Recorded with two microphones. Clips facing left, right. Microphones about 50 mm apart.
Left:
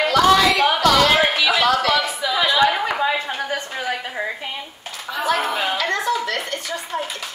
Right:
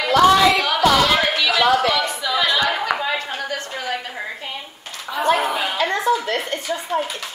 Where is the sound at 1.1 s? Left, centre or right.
Centre.